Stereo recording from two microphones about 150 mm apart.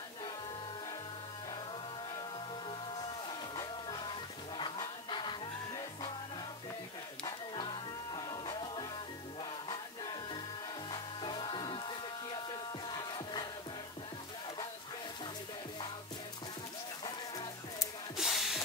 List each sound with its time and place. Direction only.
3.3 s music: 30° left (ahead or behind)
7.2 s music: 30° left (ahead or behind)
17.0 s music: 25° left (ahead or behind)
18.1 s ratchet: centre (ahead or behind)